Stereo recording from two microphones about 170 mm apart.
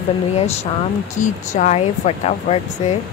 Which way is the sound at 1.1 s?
45° left (ahead or behind).